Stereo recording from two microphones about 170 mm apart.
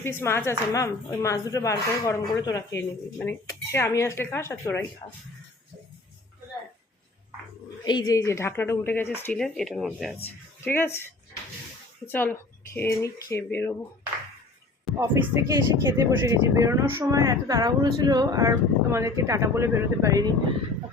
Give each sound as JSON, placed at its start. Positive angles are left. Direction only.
{"t": 0.0, "sound": "speech", "side_deg": 15}
{"t": 7.9, "sound": "speech", "side_deg": 25}
{"t": 10.2, "sound": "speech", "side_deg": 10}
{"t": 14.9, "sound": "speech", "side_deg": -15}